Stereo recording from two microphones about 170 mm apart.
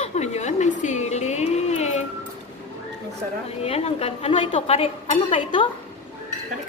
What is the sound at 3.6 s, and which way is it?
A woman's voice, 35° left (ahead or behind).